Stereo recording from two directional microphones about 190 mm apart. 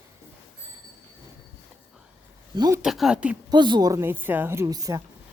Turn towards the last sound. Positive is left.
turn(degrees=-20)  # may be behind; listen again after turning